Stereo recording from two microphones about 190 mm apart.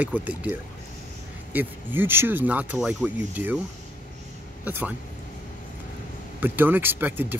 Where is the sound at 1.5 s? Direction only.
10° right (ahead or behind).